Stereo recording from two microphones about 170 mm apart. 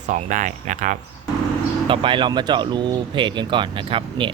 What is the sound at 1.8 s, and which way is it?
Speech, 30° right (ahead or behind).